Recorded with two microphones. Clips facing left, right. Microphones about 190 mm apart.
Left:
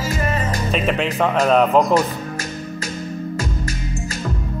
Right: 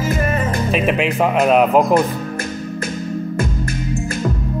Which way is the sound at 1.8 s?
55° right (ahead or behind).